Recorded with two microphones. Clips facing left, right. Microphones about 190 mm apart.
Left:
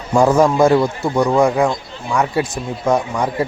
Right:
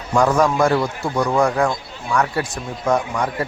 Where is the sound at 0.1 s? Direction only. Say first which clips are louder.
Left 4 dB; 25° left (ahead or behind).